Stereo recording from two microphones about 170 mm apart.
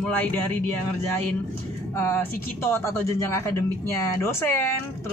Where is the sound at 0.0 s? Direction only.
10° left (ahead or behind).